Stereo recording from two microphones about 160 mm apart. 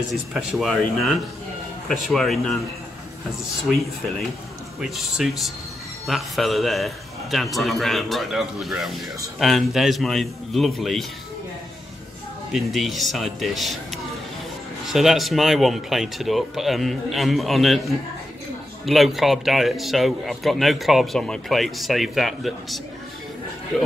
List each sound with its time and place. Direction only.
0.1 s a man's voice: 5° right (ahead or behind)
3.6 s a man's voice: centre (ahead or behind)
12.5 s a man's voice: centre (ahead or behind)
14.9 s a man's voice: centre (ahead or behind)